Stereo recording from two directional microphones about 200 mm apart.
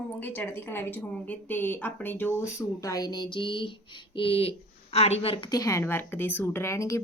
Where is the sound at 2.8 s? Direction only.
15° left (ahead or behind).